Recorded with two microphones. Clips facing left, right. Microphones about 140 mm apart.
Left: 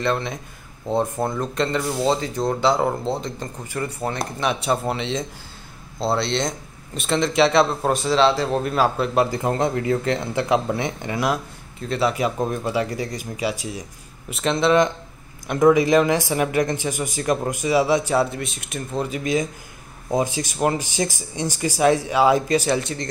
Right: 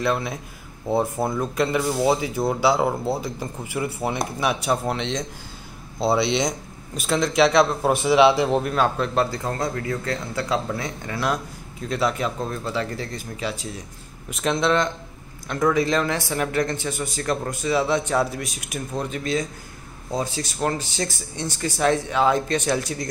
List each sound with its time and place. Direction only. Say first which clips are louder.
0.0 s speech: even; 5° right (ahead or behind)
8.0 s speech: right 3 dB; 15° right (ahead or behind)
8.6 s speech: left 1 dB; 5° left (ahead or behind); by 11.1 s 20° left (ahead or behind)
11.1 s speech: left 1 dB; 10° left (ahead or behind)
12.4 s speech: left 4 dB; 15° left (ahead or behind)
14.3 s speech: left 2 dB; centre (ahead or behind)
15.4 s speech: left 5 dB; 15° left (ahead or behind); by 23.0 s centre (ahead or behind)